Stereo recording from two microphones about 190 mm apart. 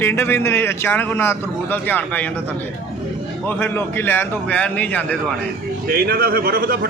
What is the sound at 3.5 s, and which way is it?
Speech, 10° left (ahead or behind).